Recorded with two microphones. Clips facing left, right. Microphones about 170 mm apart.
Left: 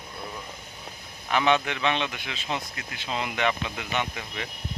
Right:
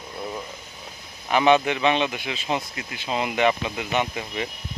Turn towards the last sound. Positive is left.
turn(degrees=-15)  # may be behind; listen again after turning